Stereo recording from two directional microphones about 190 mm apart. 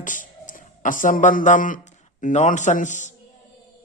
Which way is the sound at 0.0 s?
45° left (ahead or behind).